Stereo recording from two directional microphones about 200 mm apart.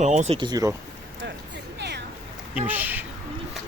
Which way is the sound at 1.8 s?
55° right (ahead or behind).